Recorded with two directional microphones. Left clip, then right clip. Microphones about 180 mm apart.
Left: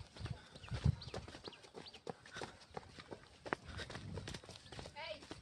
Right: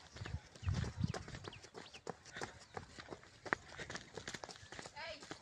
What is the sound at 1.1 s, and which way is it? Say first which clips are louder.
Clip-clop: right 1 dB; 5° right (ahead or behind).